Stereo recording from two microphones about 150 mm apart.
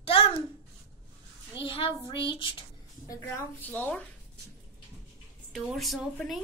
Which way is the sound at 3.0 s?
15° left (ahead or behind).